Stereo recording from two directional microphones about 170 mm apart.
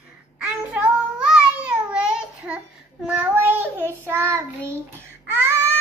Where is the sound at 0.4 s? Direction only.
5° right (ahead or behind).